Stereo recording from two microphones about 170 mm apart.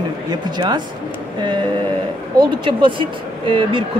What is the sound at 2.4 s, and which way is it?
Speech, 30° right (ahead or behind).